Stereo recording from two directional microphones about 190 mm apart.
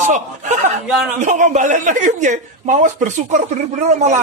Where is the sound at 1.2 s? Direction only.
40° right (ahead or behind).